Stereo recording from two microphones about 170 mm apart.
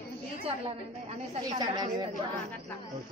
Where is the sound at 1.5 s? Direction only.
25° right (ahead or behind).